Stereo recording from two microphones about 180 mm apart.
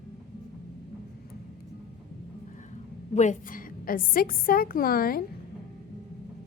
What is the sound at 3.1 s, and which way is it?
A woman's voice, 45° left (ahead or behind).